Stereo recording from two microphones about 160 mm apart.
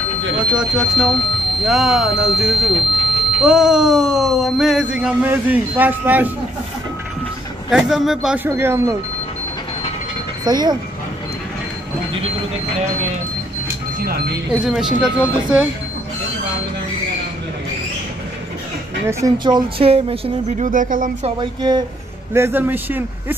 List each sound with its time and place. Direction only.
0.6 s speech: centre (ahead or behind)
7.7 s speech: centre (ahead or behind)
8.5 s a man's voice: 15° right (ahead or behind)
10.4 s speech: 25° right (ahead or behind)
14.5 s speech: 5° right (ahead or behind)
19.0 s speech: 25° right (ahead or behind); by 21.3 s 55° right (ahead or behind)
21.4 s speech: 25° right (ahead or behind)
22.3 s a man's voice: 15° right (ahead or behind)